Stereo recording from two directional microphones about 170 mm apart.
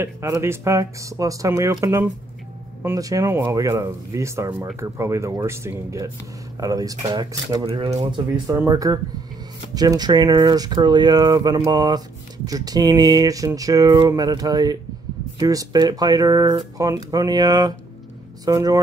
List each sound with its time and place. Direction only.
0.0 s speech: 15° right (ahead or behind)
7.6 s speech: 30° right (ahead or behind)
8.5 s speech: 20° right (ahead or behind)